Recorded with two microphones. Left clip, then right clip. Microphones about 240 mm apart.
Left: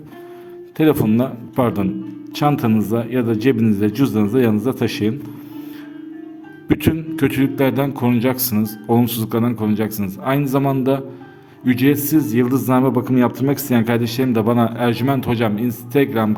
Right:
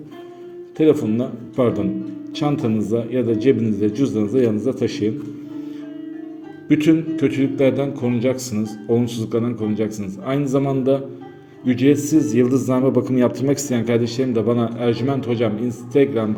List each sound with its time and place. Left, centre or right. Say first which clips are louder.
0.8 s speech: left 1 dB; left
6.7 s speech: right 3 dB; left